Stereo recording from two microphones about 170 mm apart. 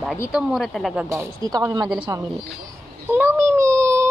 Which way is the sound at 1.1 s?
20° right (ahead or behind).